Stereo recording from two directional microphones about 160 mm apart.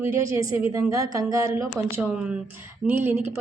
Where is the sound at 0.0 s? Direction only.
15° right (ahead or behind).